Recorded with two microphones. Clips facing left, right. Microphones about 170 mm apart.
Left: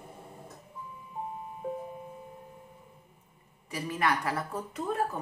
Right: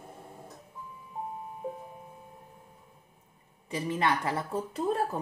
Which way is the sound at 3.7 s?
25° right (ahead or behind).